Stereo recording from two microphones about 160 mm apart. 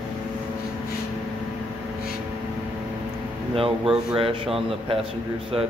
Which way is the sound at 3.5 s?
35° right (ahead or behind).